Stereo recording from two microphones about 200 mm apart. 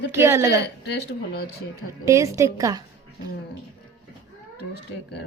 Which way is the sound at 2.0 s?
15° right (ahead or behind).